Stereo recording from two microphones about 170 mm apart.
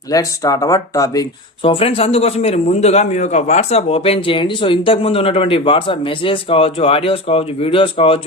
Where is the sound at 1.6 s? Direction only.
35° left (ahead or behind).